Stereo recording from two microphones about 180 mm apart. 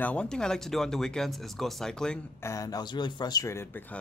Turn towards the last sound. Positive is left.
turn(degrees=10)  # may be behind; listen again after turning